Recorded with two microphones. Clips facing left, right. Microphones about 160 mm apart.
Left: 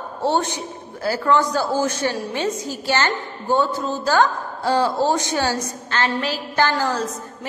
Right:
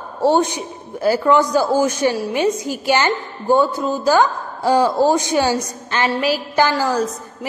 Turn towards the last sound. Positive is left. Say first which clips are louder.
# right 5 dB
turn(degrees=-10)  # may be behind; listen again after turning